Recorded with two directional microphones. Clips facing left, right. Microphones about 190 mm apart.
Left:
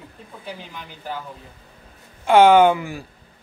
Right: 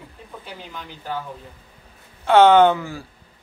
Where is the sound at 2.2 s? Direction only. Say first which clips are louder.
Even; 10° left (ahead or behind).